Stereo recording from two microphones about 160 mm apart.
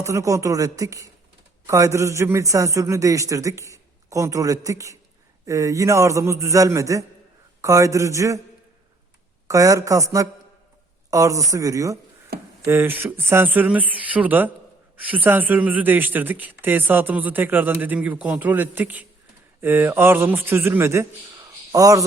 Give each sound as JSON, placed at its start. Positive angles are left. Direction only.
{"t": 0.0, "sound": "a man's voice", "side_deg": -20}
{"t": 9.5, "sound": "a man's voice", "side_deg": -20}